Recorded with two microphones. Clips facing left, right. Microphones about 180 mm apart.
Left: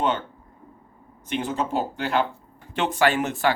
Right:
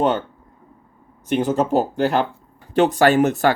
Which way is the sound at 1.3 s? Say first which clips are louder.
Right 8 dB; 40° right (ahead or behind).